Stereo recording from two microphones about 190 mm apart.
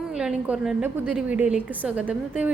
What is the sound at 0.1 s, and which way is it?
A woman's voice, 5° right (ahead or behind).